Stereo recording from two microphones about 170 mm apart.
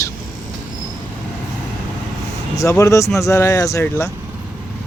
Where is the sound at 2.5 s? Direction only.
20° left (ahead or behind).